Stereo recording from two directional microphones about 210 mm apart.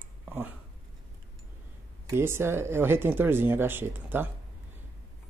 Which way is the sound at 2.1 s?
10° right (ahead or behind).